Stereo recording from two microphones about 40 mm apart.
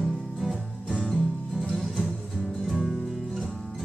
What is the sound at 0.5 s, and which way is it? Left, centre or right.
Music, centre.